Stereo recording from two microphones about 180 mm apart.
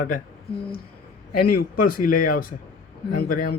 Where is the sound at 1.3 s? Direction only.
55° left (ahead or behind).